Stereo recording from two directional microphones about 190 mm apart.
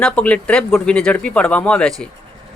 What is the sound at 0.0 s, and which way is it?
Speech, 5° left (ahead or behind).